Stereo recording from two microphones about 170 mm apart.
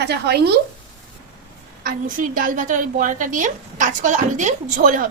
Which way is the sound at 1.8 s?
55° right (ahead or behind).